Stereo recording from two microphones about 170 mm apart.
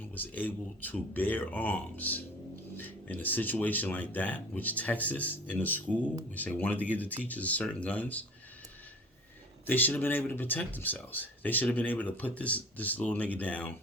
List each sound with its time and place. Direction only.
0.0 s speech: 10° left (ahead or behind)
9.6 s speech: 10° left (ahead or behind)